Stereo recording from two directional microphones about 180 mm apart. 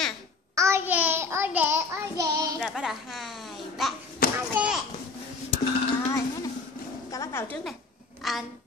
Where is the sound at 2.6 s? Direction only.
Centre (ahead or behind).